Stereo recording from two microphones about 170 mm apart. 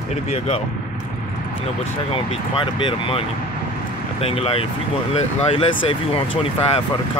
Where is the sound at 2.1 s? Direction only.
30° left (ahead or behind).